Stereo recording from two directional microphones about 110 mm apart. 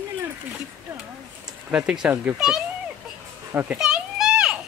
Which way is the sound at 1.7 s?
10° right (ahead or behind).